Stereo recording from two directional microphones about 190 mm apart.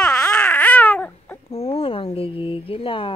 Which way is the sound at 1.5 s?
35° left (ahead or behind).